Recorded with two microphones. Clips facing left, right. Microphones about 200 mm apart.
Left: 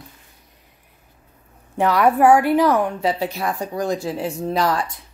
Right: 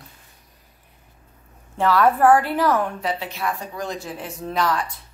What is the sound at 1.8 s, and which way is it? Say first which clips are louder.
A woman's voice: left 2 dB; 15° left (ahead or behind).